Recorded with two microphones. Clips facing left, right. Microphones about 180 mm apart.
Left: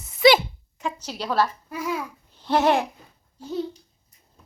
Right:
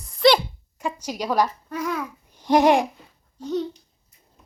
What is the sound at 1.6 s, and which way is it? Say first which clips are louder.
Speech: right 1 dB; 10° left (ahead or behind).